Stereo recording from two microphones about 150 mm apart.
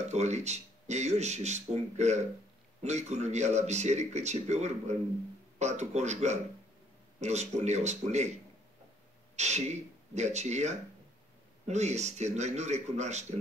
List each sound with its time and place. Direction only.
0.0 s speech: 50° right (ahead or behind)
9.4 s speech: 50° right (ahead or behind)